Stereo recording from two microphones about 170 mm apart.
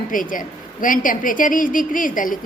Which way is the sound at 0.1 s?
50° left (ahead or behind).